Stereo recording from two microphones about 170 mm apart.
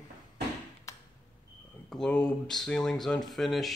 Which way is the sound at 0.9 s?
20° left (ahead or behind).